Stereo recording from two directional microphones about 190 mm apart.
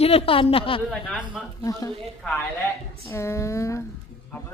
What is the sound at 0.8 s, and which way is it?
Speech, centre (ahead or behind).